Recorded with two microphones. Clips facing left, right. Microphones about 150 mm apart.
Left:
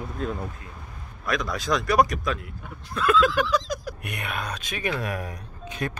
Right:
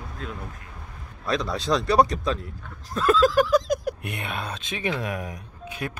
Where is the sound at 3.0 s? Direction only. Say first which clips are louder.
Right 2 dB; 35° right (ahead or behind); by 4.0 s 55° right (ahead or behind).